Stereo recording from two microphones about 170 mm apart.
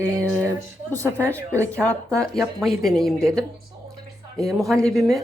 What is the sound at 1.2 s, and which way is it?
Speech, 15° right (ahead or behind).